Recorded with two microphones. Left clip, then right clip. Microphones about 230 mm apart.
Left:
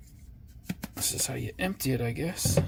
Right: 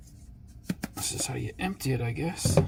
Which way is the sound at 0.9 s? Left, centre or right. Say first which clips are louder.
Left 2 dB; left.